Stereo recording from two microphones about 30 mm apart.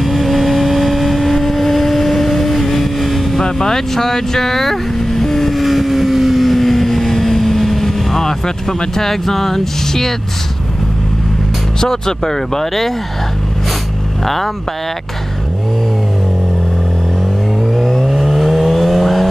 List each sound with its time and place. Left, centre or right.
0.0 s vehicle: centre
3.3 s vehicle: centre
8.2 s speech: centre
11.8 s speech: centre
14.2 s speech: centre
17.7 s vehicle: centre